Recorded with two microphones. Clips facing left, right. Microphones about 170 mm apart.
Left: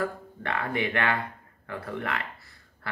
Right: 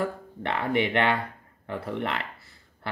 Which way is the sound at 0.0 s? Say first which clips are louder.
Right 1 dB; 25° right (ahead or behind).